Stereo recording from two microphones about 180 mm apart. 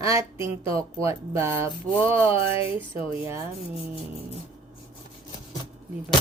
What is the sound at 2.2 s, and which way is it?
Speech, 35° left (ahead or behind).